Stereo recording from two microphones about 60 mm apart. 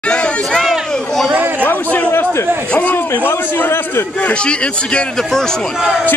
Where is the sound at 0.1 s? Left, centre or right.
Centre.